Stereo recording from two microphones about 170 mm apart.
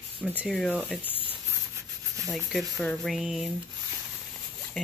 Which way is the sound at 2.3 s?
Centre (ahead or behind).